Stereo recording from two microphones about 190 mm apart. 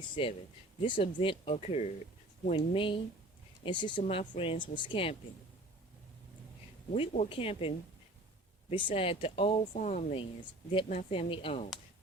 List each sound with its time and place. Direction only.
0.2 s speech: 30° left (ahead or behind)
6.9 s speech: 30° left (ahead or behind)
8.7 s speech: 30° left (ahead or behind)
9.7 s speech: 40° left (ahead or behind)